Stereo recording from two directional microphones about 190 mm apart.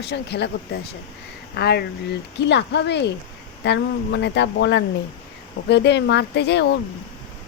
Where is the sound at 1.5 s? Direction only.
55° left (ahead or behind).